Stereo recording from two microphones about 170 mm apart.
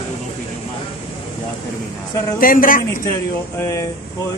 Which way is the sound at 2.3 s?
55° left (ahead or behind).